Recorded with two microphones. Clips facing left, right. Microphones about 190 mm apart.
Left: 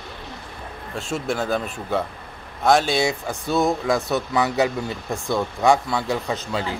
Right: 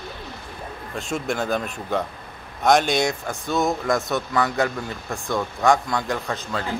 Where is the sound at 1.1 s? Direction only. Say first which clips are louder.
Left 1 dB; 5° left (ahead or behind).